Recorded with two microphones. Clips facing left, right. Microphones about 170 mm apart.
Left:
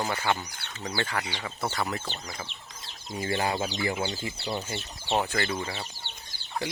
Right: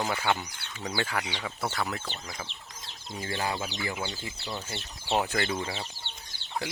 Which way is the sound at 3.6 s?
30° left (ahead or behind).